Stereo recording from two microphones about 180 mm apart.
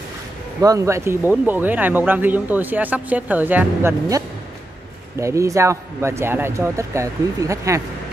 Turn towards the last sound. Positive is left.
turn(degrees=-15)  # may be behind; listen again after turning